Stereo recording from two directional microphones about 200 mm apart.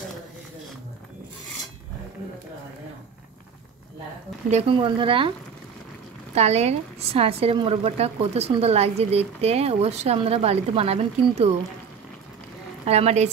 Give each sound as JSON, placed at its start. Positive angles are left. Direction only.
{"t": 4.5, "sound": "speech", "side_deg": -30}
{"t": 6.3, "sound": "a woman's voice", "side_deg": -30}
{"t": 12.8, "sound": "a woman's voice", "side_deg": -30}